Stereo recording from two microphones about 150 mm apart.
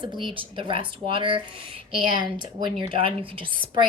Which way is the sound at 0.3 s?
35° right (ahead or behind).